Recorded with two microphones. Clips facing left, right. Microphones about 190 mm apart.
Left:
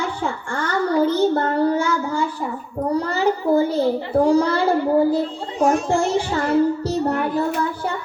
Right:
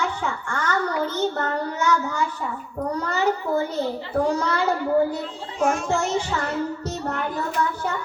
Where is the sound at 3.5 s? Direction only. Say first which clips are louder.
Left 10 dB; 35° left (ahead or behind).